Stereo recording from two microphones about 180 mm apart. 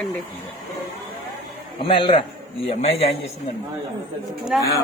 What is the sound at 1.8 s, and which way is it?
Speech, 30° left (ahead or behind).